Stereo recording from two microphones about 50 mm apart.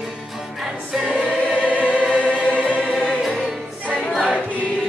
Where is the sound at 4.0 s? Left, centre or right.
Centre.